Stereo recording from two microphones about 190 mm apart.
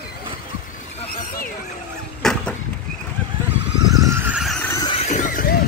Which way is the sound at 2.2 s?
5° left (ahead or behind).